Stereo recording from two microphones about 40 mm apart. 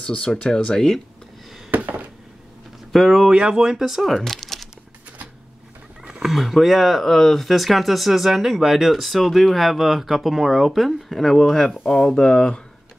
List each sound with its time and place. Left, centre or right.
0.5 s speech: centre
1.7 s a sound: right
2.9 s speech: centre
3.3 s speech: right
3.7 s speech: centre
6.2 s speech: centre
11.1 s speech: centre